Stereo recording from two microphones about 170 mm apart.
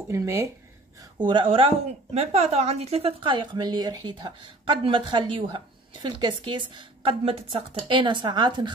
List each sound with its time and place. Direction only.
0.1 s speech: 20° right (ahead or behind)
1.1 s speech: 30° right (ahead or behind)